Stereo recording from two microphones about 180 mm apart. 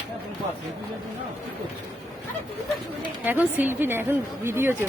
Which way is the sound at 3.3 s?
10° right (ahead or behind).